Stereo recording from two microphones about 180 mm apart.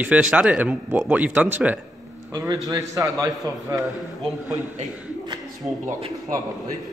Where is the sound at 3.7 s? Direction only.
Centre (ahead or behind).